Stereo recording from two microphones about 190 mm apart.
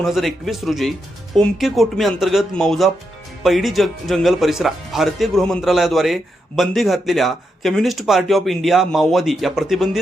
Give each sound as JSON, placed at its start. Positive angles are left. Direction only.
{"t": 0.0, "sound": "speech", "side_deg": 0}